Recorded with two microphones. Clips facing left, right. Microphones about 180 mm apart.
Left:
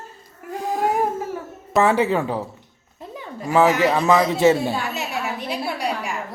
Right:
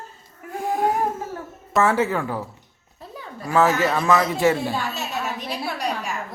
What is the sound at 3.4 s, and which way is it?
A woman's voice, 15° left (ahead or behind).